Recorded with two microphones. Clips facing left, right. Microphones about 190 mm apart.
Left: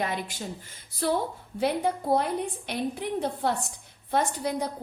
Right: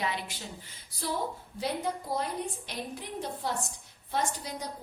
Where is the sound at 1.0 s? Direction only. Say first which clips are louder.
Left 6 dB; 60° left (ahead or behind).